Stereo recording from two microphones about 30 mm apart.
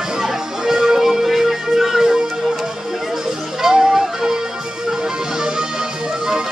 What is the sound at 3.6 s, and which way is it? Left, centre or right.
Music, right.